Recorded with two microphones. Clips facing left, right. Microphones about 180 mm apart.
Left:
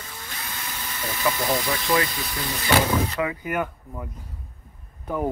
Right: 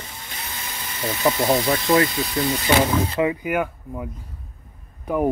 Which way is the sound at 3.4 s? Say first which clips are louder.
Right 4 dB; 10° right (ahead or behind).